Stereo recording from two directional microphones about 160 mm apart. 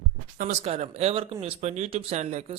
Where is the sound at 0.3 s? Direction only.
45° right (ahead or behind).